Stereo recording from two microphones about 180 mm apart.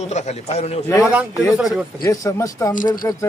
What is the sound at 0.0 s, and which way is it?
Speech, 40° left (ahead or behind).